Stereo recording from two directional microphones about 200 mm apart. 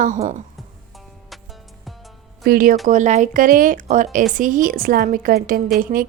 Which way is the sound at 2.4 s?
45° right (ahead or behind).